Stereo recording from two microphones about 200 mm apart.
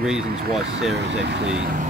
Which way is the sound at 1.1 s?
60° right (ahead or behind).